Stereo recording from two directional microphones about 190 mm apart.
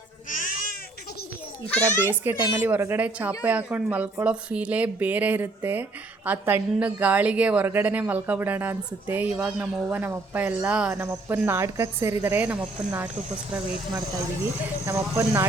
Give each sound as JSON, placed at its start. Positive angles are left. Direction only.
{"t": 0.3, "sound": "goat", "side_deg": 45}
{"t": 2.0, "sound": "a woman's voice", "side_deg": -10}
{"t": 14.8, "sound": "a woman's voice", "side_deg": -15}